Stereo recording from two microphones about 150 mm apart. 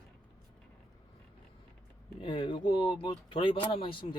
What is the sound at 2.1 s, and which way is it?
Speech, 35° left (ahead or behind).